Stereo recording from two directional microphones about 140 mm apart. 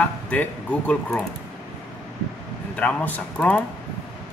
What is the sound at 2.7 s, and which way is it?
Speech, 10° left (ahead or behind).